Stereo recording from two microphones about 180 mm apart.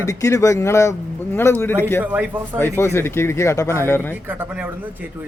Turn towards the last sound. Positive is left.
turn(degrees=-10)  # may be behind; listen again after turning